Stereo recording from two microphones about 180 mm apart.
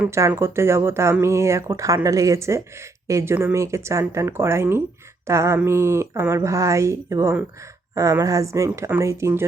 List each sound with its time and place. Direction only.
0.0 s speech: 15° right (ahead or behind)